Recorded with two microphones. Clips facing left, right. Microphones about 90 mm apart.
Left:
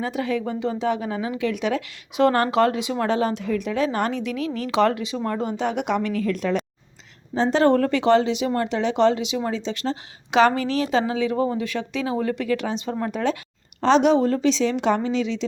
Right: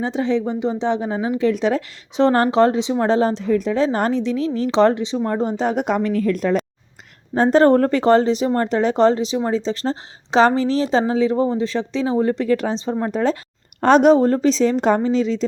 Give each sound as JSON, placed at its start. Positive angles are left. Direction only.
{"t": 0.0, "sound": "speech", "side_deg": -25}
{"t": 13.8, "sound": "speech", "side_deg": -45}